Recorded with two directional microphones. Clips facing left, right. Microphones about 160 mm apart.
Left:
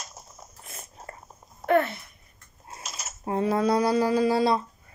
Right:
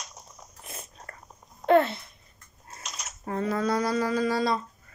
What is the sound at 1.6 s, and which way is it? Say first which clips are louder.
Speech: right 2 dB; 25° right (ahead or behind).